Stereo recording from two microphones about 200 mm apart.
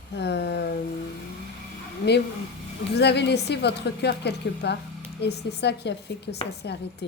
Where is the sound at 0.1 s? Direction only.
60° left (ahead or behind).